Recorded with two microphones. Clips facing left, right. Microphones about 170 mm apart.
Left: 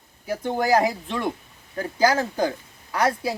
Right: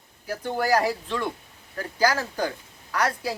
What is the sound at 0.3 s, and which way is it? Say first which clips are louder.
Speech: left 2 dB; 20° left (ahead or behind).